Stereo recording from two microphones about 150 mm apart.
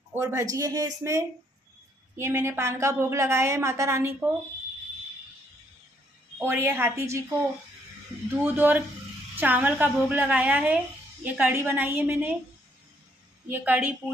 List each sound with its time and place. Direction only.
0.1 s a woman's voice: 20° right (ahead or behind)
6.3 s a woman's voice: 15° right (ahead or behind)
8.4 s a woman's voice: 15° right (ahead or behind)
13.5 s a woman's voice: 10° right (ahead or behind)